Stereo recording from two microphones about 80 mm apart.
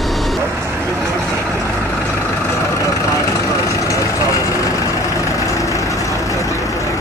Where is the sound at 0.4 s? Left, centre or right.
Right.